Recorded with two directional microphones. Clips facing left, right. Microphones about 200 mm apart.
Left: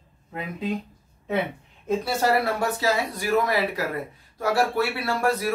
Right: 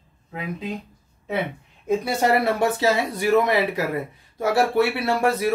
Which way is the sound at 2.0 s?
15° right (ahead or behind).